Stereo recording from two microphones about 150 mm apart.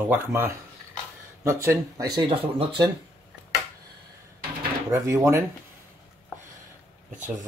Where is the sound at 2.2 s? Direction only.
40° right (ahead or behind).